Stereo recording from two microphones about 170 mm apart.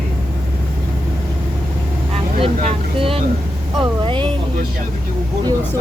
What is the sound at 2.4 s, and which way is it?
Vehicle, 30° right (ahead or behind).